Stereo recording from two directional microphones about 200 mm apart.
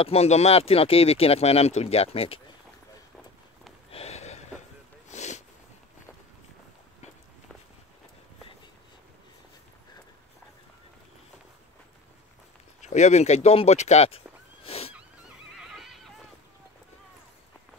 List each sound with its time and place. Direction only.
0.0 s speech: 30° left (ahead or behind)
3.9 s a sound: 30° left (ahead or behind)
12.8 s horse: 35° left (ahead or behind)
15.5 s neigh: centre (ahead or behind)